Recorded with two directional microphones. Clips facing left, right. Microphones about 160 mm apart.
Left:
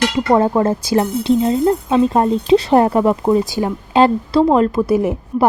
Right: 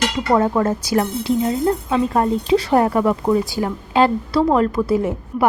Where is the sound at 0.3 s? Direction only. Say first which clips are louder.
Left 2 dB; 30° left (ahead or behind).